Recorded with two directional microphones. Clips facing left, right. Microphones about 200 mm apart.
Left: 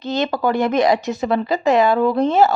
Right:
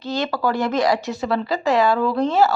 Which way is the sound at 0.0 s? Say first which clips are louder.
Left 3 dB; 20° left (ahead or behind).